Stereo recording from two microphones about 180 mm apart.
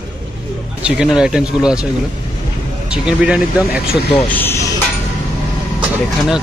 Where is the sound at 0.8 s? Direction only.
5° right (ahead or behind).